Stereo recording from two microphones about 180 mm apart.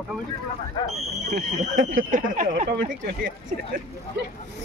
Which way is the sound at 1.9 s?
50° right (ahead or behind).